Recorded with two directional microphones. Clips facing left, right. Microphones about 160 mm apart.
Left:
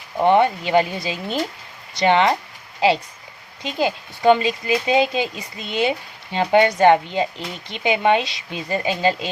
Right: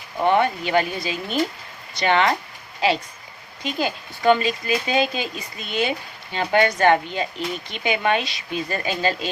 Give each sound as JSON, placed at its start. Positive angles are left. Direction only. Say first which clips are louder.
{"t": 0.2, "sound": "speech", "louder": "left 3 dB", "side_deg": 25}
{"t": 3.6, "sound": "speech", "louder": "left 3 dB", "side_deg": 25}